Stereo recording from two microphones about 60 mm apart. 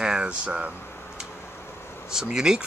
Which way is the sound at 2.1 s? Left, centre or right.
Centre.